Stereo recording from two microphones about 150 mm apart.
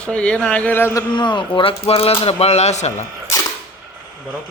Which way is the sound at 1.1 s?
30° left (ahead or behind).